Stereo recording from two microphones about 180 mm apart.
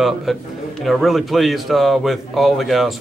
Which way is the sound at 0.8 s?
Centre (ahead or behind).